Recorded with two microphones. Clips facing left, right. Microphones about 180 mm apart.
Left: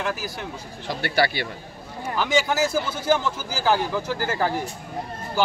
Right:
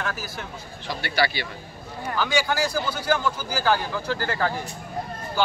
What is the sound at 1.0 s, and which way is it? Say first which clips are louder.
Speech: left 2 dB; 50° left (ahead or behind).